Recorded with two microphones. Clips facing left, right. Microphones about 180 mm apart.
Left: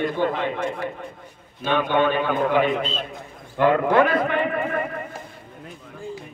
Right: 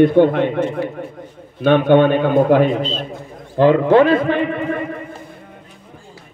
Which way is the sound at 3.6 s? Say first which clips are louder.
Right 6 dB; 30° right (ahead or behind).